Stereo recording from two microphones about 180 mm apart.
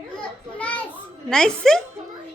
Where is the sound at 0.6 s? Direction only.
5° left (ahead or behind).